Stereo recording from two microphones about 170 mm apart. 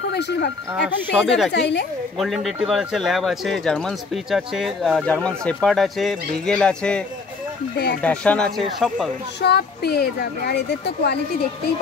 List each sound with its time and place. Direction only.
0.0 s a sound: 85° left
0.7 s speech: centre (ahead or behind)
1.5 s a woman's voice: 90° left
2.1 s speech: centre (ahead or behind)
8.0 s speech: 5° left (ahead or behind)
9.4 s speech: 75° left (ahead or behind)